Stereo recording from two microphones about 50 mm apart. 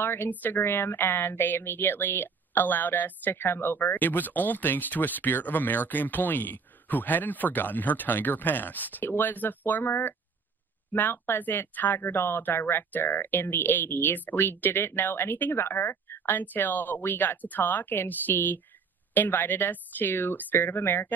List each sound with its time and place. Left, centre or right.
0.0 s a woman's voice: left